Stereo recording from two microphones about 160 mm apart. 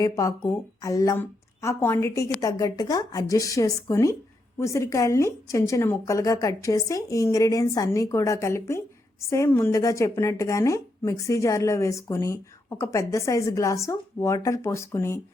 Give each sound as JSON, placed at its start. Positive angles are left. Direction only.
{"t": 0.0, "sound": "speech", "side_deg": 20}